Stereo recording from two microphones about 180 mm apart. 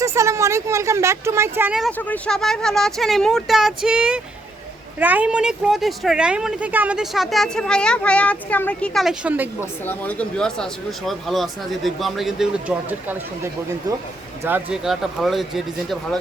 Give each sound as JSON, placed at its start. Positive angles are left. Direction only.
{"t": 0.0, "sound": "speech", "side_deg": -15}
{"t": 1.8, "sound": "speech", "side_deg": 10}
{"t": 9.8, "sound": "speech", "side_deg": 10}